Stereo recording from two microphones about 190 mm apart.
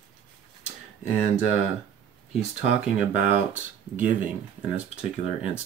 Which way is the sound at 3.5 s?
10° right (ahead or behind).